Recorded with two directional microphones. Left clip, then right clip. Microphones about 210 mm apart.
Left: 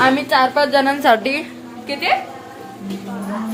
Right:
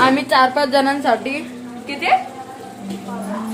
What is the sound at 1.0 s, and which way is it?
Speech, 40° left (ahead or behind).